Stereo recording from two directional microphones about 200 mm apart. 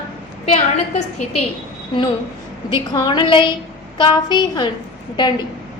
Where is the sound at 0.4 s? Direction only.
35° left (ahead or behind).